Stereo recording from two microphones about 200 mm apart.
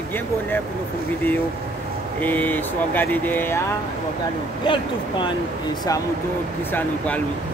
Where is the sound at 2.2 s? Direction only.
10° left (ahead or behind).